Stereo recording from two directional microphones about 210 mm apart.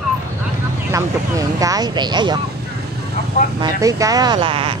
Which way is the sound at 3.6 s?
15° right (ahead or behind).